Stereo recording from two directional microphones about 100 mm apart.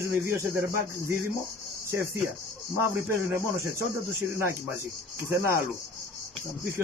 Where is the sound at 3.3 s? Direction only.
25° right (ahead or behind).